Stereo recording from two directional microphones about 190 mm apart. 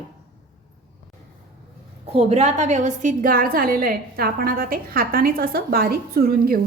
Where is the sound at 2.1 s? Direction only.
35° right (ahead or behind).